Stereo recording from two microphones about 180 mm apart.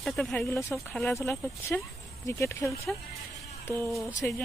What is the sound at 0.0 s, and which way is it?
Speech, centre (ahead or behind).